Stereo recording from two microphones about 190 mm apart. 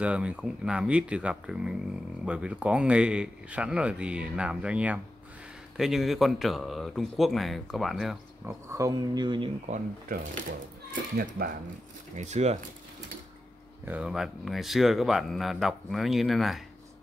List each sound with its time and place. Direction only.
0.0 s speech: 5° right (ahead or behind)
8.6 s speech: 15° right (ahead or behind)
9.7 s speech: 50° right (ahead or behind)
12.2 s speech: 35° right (ahead or behind)
13.8 s speech: 5° right (ahead or behind)